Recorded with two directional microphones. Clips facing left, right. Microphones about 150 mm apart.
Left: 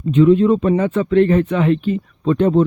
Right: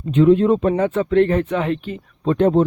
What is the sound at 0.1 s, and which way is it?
Speech, 65° right (ahead or behind).